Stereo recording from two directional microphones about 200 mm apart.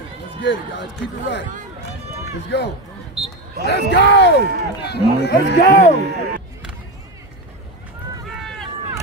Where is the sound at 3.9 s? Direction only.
60° left (ahead or behind).